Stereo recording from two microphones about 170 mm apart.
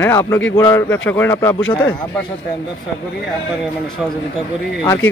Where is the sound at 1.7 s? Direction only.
25° left (ahead or behind).